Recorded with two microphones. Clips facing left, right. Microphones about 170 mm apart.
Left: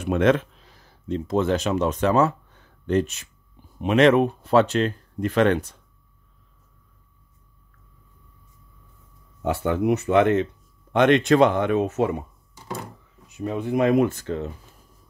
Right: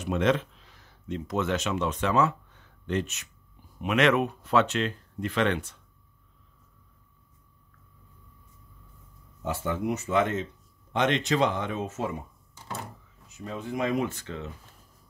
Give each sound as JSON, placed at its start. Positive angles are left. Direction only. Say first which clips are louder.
{"t": 0.0, "sound": "speech", "louder": "left 6 dB", "side_deg": 55}
{"t": 0.7, "sound": "speech", "louder": "left 6 dB", "side_deg": 35}
{"t": 9.4, "sound": "speech", "louder": "left 7 dB", "side_deg": 65}
{"t": 13.3, "sound": "speech", "louder": "left 9 dB", "side_deg": 65}